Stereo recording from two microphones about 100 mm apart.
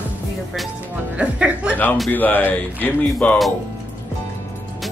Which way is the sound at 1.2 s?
10° right (ahead or behind).